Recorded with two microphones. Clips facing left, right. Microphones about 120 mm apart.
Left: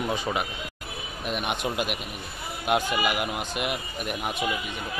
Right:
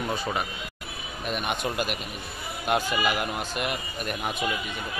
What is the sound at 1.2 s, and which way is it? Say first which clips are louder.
Speech: even; 5° left (ahead or behind).